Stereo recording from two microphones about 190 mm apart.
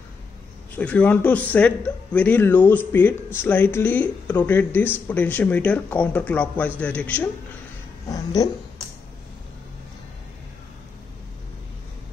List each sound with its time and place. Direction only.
0.7 s speech: 5° left (ahead or behind)
8.1 s speech: 20° left (ahead or behind)